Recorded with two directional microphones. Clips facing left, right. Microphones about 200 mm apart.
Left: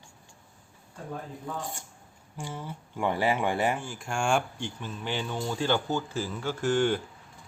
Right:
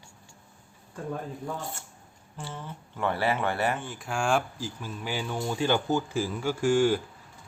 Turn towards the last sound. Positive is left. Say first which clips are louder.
# right 3 dB
turn(degrees=-5)  # may be behind; listen again after turning